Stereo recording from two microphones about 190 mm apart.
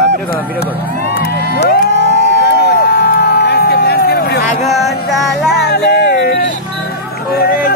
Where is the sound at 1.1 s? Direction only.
55° left (ahead or behind).